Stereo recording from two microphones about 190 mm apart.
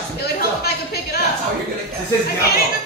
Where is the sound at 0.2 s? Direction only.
55° left (ahead or behind).